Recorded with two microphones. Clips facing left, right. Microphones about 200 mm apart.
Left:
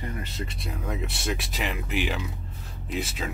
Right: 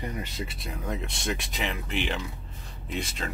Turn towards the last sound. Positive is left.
turn(degrees=5)  # may be behind; listen again after turning